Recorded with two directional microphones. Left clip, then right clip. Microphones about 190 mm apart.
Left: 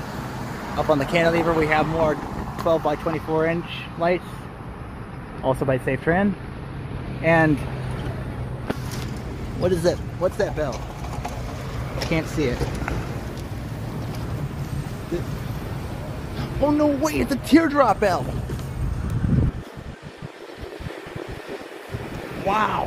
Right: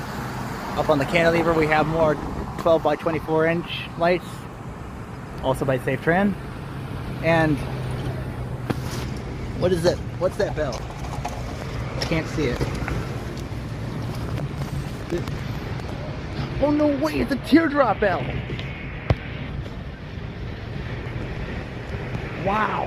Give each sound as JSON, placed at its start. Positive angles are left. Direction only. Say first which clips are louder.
{"t": 0.7, "sound": "speech", "louder": "even", "side_deg": 5}
{"t": 5.4, "sound": "speech", "louder": "left 1 dB", "side_deg": -5}
{"t": 7.2, "sound": "speech", "louder": "left 2 dB", "side_deg": 5}
{"t": 9.6, "sound": "speech", "louder": "even", "side_deg": 15}
{"t": 12.0, "sound": "a man's voice", "louder": "left 1 dB", "side_deg": 25}
{"t": 16.3, "sound": "a man's voice", "louder": "left 1 dB", "side_deg": 20}
{"t": 22.5, "sound": "a man's voice", "louder": "left 1 dB", "side_deg": 20}